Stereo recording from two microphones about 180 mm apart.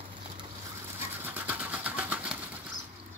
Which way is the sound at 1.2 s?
10° right (ahead or behind).